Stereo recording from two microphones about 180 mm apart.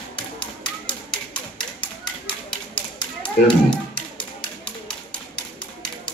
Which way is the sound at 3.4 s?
55° left (ahead or behind).